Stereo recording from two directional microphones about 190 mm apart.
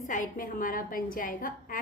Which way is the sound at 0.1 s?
45° left (ahead or behind).